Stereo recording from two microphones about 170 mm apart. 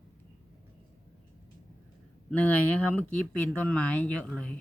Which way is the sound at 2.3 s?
10° left (ahead or behind).